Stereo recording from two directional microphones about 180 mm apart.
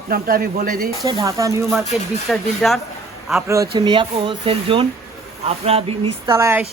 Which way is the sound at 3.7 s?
30° right (ahead or behind).